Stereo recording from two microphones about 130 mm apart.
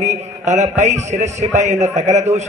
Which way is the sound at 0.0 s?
60° right (ahead or behind).